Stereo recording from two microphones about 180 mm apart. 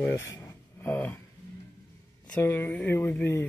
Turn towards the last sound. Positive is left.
turn(degrees=10)  # may be behind; listen again after turning